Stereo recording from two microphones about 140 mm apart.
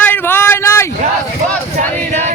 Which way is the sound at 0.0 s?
15° left (ahead or behind).